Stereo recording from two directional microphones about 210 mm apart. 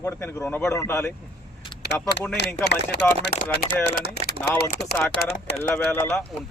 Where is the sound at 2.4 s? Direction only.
50° left (ahead or behind).